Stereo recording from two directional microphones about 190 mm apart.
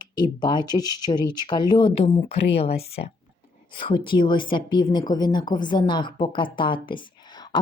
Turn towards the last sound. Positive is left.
turn(degrees=25)  # may be behind; listen again after turning